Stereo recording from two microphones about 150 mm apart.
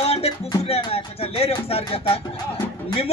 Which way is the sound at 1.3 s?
40° left (ahead or behind).